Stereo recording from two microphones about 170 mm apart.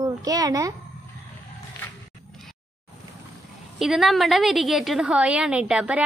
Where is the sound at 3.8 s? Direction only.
Centre (ahead or behind).